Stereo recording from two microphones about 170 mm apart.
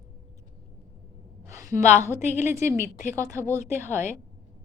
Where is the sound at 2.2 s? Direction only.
45° left (ahead or behind).